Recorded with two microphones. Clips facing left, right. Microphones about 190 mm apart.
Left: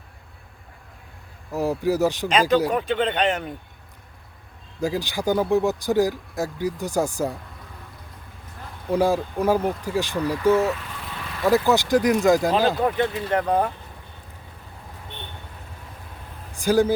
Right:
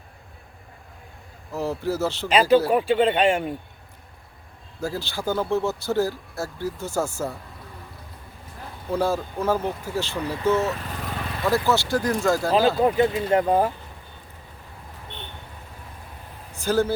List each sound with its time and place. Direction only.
1.5 s speech: 15° left (ahead or behind)
2.6 s speech: 5° right (ahead or behind)
4.8 s speech: 15° left (ahead or behind)
8.9 s speech: 15° left (ahead or behind)
10.7 s vehicle: 40° right (ahead or behind)
11.4 s speech: 15° left (ahead or behind)
12.8 s speech: 10° right (ahead or behind)
16.5 s a sound: 15° left (ahead or behind)